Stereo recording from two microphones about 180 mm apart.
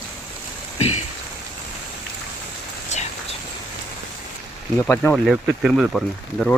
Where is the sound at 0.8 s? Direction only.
35° left (ahead or behind).